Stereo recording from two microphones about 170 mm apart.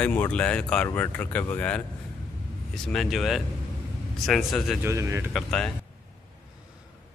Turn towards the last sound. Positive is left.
turn(degrees=5)  # may be behind; listen again after turning